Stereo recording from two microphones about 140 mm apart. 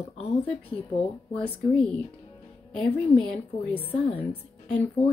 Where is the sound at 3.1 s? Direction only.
10° left (ahead or behind).